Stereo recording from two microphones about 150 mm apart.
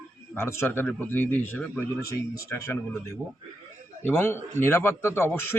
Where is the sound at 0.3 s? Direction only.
15° left (ahead or behind).